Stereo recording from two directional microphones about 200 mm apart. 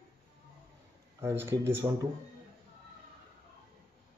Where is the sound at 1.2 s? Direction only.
10° right (ahead or behind).